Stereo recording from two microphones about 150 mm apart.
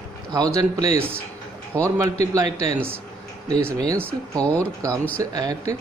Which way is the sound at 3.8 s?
25° right (ahead or behind).